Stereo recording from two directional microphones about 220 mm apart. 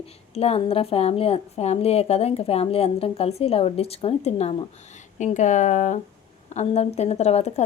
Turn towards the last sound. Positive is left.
turn(degrees=30)  # may be behind; listen again after turning